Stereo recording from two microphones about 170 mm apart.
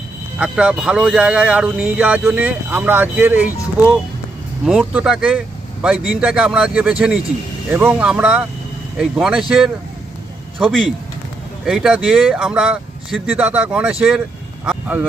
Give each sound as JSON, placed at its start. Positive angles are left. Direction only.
{"t": 0.3, "sound": "speech", "side_deg": -5}
{"t": 4.6, "sound": "speech", "side_deg": -5}
{"t": 14.7, "sound": "a sound", "side_deg": -10}